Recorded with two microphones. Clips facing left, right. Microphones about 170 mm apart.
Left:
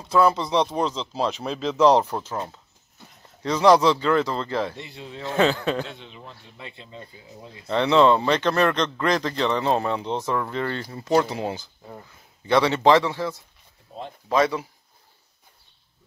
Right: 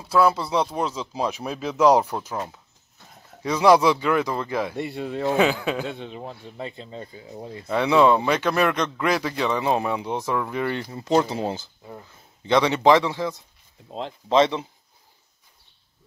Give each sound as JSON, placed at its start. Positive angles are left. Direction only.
{"t": 0.1, "sound": "speech", "side_deg": -5}
{"t": 4.7, "sound": "speech", "side_deg": -55}
{"t": 5.3, "sound": "speech", "side_deg": -10}
{"t": 5.9, "sound": "speech", "side_deg": -50}
{"t": 7.6, "sound": "speech", "side_deg": -10}
{"t": 13.8, "sound": "speech", "side_deg": -90}
{"t": 14.3, "sound": "speech", "side_deg": -25}